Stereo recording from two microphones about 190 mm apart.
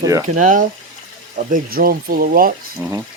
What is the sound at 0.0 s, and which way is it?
Speech, 15° right (ahead or behind).